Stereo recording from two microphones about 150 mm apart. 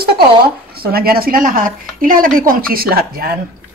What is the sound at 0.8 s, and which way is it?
Speech, 90° right.